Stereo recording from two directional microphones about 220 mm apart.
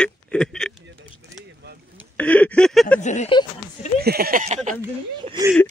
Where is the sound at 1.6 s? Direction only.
50° right (ahead or behind).